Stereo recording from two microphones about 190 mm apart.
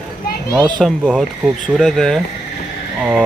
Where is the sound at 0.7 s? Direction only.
5° left (ahead or behind).